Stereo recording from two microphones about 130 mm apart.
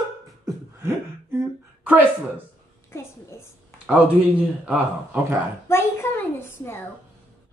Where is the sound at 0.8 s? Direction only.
15° right (ahead or behind).